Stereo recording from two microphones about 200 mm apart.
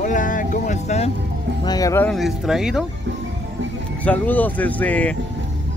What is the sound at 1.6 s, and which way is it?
Music, 15° left (ahead or behind).